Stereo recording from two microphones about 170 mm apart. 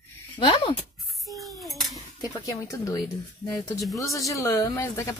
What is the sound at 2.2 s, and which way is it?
A woman's voice, 20° left (ahead or behind).